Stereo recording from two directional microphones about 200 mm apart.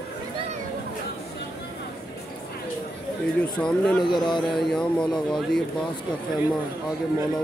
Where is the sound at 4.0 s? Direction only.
20° left (ahead or behind).